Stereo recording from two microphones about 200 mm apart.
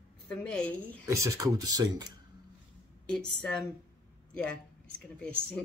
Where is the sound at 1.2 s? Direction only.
20° right (ahead or behind).